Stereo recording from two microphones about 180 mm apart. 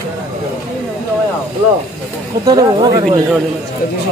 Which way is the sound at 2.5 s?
25° right (ahead or behind).